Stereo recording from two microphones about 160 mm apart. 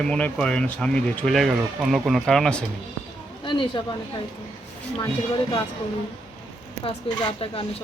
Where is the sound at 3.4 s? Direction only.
30° left (ahead or behind).